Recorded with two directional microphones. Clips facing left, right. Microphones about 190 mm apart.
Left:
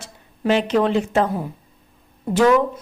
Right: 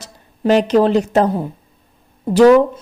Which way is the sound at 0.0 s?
40° right (ahead or behind).